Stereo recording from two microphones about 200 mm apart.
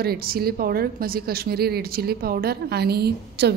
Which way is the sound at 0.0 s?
50° right (ahead or behind).